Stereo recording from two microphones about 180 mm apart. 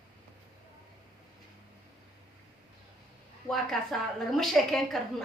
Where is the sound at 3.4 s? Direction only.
Centre (ahead or behind).